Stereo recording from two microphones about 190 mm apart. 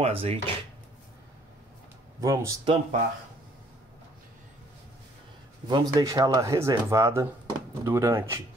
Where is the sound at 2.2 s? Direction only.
15° right (ahead or behind).